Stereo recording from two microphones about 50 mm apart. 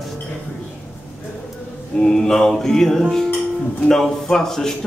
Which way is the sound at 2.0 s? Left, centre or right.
Centre.